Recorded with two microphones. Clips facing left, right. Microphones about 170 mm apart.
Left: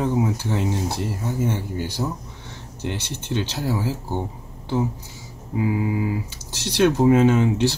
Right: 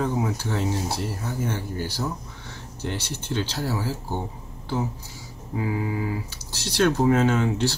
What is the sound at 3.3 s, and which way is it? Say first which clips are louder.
Speech: left 3 dB; 15° left (ahead or behind).